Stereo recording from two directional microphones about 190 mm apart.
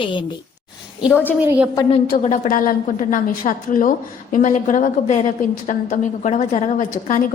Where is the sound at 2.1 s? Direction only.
40° left (ahead or behind).